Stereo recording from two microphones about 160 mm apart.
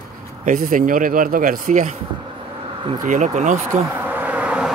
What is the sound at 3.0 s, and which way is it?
Speech, 50° right (ahead or behind).